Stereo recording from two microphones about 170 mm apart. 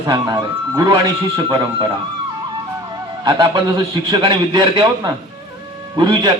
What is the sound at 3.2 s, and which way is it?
A man's voice, 25° right (ahead or behind).